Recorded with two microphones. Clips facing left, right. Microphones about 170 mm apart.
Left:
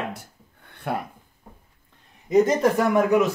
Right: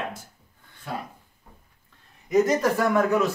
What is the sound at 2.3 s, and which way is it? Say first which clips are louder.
Speech: left 2 dB; 20° left (ahead or behind).